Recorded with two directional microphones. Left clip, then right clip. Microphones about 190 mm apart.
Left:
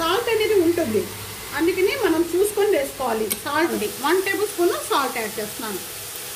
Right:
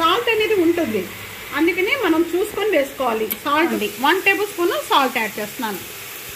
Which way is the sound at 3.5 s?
35° right (ahead or behind).